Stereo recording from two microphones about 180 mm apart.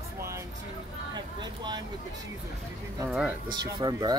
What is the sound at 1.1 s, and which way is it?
Vehicle, 25° right (ahead or behind).